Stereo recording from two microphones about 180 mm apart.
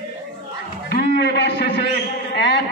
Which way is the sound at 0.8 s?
65° left (ahead or behind).